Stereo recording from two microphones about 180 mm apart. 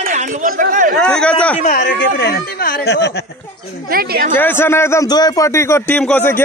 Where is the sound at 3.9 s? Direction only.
55° right (ahead or behind).